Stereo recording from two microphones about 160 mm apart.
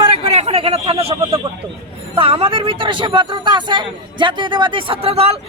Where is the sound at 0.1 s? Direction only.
35° right (ahead or behind).